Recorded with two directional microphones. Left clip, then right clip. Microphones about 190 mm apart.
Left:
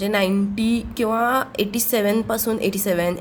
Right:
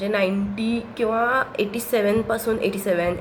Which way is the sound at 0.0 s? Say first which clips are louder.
Left 1 dB; 45° left (ahead or behind).